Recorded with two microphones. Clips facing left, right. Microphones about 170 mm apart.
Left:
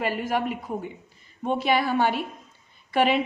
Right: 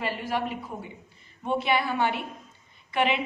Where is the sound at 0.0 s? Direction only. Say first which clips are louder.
Left 4 dB; 45° left (ahead or behind).